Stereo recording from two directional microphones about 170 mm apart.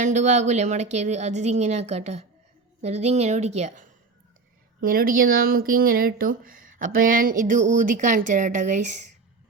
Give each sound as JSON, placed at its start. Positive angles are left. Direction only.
{"t": 0.0, "sound": "a woman's voice", "side_deg": -45}
{"t": 4.8, "sound": "speech", "side_deg": -55}